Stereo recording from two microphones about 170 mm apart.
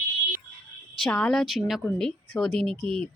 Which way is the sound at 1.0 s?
5° left (ahead or behind).